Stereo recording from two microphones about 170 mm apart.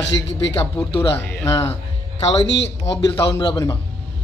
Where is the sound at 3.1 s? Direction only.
30° left (ahead or behind).